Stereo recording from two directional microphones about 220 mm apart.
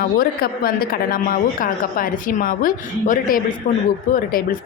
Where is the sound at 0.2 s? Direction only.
40° left (ahead or behind).